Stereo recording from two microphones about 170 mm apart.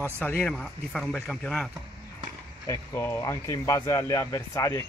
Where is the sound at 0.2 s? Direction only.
10° left (ahead or behind).